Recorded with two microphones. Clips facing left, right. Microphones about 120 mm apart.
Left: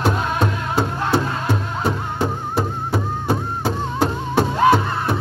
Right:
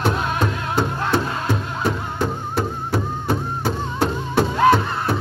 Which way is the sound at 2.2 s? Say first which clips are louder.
Left 1 dB; 20° left (ahead or behind).